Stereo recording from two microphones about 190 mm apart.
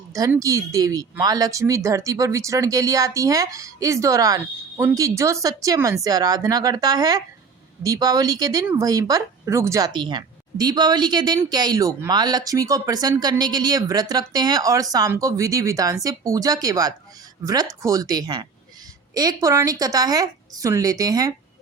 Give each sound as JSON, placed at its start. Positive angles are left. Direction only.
{"t": 0.1, "sound": "a woman's voice", "side_deg": -15}